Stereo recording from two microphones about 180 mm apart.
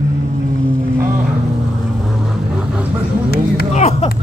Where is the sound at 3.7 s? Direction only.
35° left (ahead or behind).